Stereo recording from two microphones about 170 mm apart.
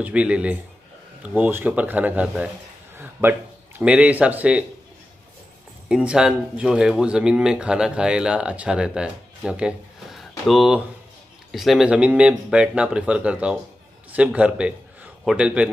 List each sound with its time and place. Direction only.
0.0 s speech: 5° right (ahead or behind)
3.0 s a sound: 10° right (ahead or behind)
3.8 s speech: 10° right (ahead or behind)
5.9 s speech: 5° right (ahead or behind)